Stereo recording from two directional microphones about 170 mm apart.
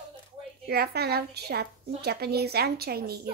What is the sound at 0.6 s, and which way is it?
A woman's voice, 70° right (ahead or behind).